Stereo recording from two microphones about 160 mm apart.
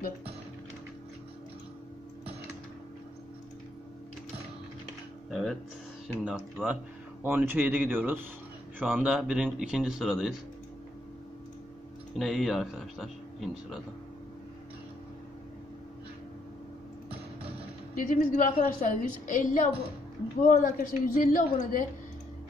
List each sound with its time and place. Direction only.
5.3 s a man's voice: centre (ahead or behind)
12.2 s a man's voice: centre (ahead or behind)
17.9 s a woman's voice: 55° left (ahead or behind)